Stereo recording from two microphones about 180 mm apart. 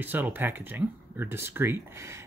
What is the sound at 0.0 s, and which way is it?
Speech, 10° right (ahead or behind).